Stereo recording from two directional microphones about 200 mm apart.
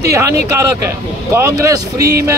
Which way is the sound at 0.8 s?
15° right (ahead or behind).